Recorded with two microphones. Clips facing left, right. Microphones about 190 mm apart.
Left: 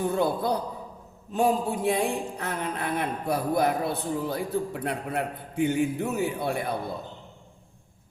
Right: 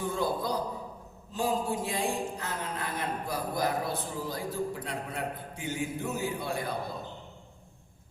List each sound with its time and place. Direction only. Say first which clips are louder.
0.1 s a man's voice: left 5 dB; 60° left (ahead or behind)